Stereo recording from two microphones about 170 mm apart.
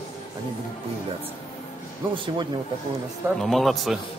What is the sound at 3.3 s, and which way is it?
Speech, centre (ahead or behind).